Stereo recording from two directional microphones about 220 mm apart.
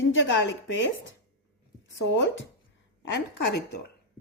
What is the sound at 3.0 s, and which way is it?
Speech, 55° left (ahead or behind).